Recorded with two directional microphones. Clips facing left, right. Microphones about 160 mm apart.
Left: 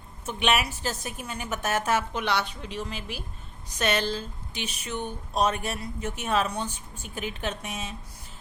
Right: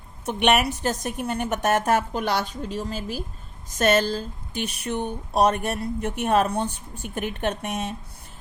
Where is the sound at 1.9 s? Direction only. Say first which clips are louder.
Right 4 dB; 50° right (ahead or behind).